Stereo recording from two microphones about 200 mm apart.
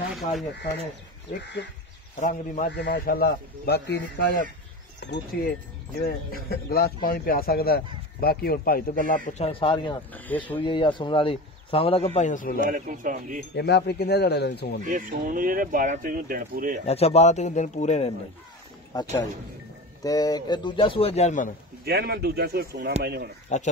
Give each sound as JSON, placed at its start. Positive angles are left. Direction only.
{"t": 0.1, "sound": "speech", "side_deg": 0}
{"t": 1.4, "sound": "a man's voice", "side_deg": 60}
{"t": 2.1, "sound": "speech", "side_deg": 40}
{"t": 2.7, "sound": "a man's voice", "side_deg": 60}
{"t": 10.1, "sound": "speech", "side_deg": 10}
{"t": 10.6, "sound": "a man's voice", "side_deg": 25}
{"t": 12.6, "sound": "speech", "side_deg": -40}
{"t": 13.6, "sound": "a man's voice", "side_deg": 55}
{"t": 14.9, "sound": "speech", "side_deg": -40}
{"t": 16.8, "sound": "speech", "side_deg": 30}
{"t": 20.0, "sound": "a man's voice", "side_deg": 20}
{"t": 21.8, "sound": "speech", "side_deg": -55}